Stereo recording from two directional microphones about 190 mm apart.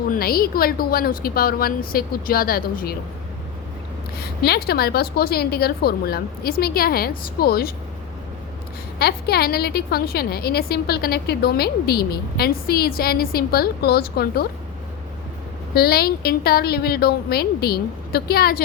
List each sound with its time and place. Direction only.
0.1 s a woman's voice: 50° left (ahead or behind)
4.2 s a woman's voice: 55° left (ahead or behind)
9.0 s a woman's voice: 55° left (ahead or behind)
15.7 s a woman's voice: 55° left (ahead or behind)